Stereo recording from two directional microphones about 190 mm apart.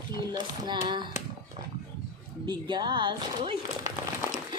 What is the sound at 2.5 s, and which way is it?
Speech, 25° right (ahead or behind).